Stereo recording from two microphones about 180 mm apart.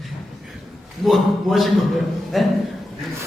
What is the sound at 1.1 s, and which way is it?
A man's voice, centre (ahead or behind).